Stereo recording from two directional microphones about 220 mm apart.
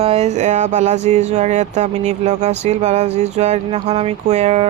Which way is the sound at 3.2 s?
30° right (ahead or behind).